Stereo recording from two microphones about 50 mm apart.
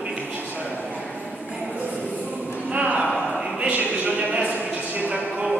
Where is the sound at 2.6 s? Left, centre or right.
Right.